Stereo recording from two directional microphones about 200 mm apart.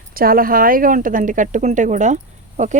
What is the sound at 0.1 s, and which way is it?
Speech, 45° right (ahead or behind).